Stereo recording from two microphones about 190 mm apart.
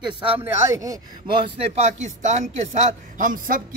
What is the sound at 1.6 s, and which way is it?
Speech, 35° right (ahead or behind).